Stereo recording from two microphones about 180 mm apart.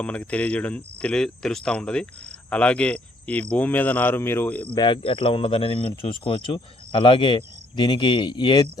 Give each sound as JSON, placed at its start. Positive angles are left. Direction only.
{"t": 0.0, "sound": "speech", "side_deg": 5}
{"t": 4.7, "sound": "speech", "side_deg": 25}